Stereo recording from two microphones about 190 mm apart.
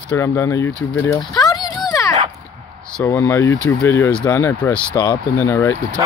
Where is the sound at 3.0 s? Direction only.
15° left (ahead or behind).